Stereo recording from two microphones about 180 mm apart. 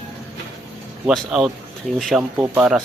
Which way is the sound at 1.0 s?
Centre (ahead or behind).